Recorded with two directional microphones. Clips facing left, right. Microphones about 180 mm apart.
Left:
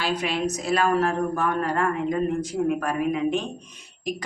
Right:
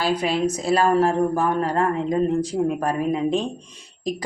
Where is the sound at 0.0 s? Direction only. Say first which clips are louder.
Right 4 dB; 35° right (ahead or behind).